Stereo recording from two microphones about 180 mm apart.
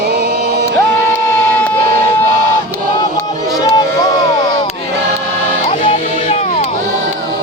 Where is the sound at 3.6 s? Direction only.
25° left (ahead or behind).